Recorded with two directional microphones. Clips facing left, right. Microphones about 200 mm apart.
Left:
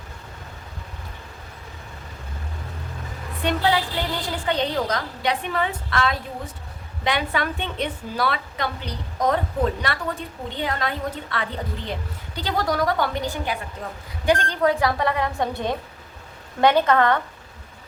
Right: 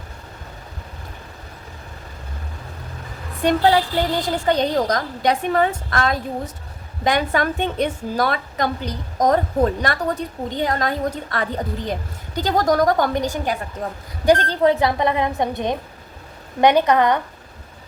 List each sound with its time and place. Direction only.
3.4 s a woman's voice: 40° right (ahead or behind); by 17.2 s 15° right (ahead or behind)